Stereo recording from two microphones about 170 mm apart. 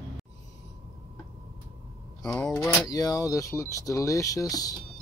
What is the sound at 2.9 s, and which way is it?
Speech, 20° left (ahead or behind).